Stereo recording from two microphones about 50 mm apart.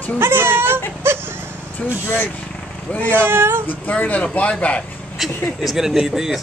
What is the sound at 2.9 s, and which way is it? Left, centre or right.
Speech, left.